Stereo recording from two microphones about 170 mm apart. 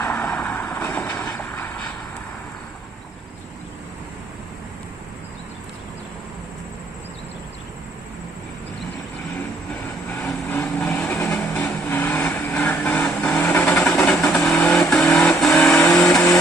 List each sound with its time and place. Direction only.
0.0 s vehicle: 10° left (ahead or behind)
1.2 s boat: 10° left (ahead or behind)
10.1 s vehicle: 10° left (ahead or behind)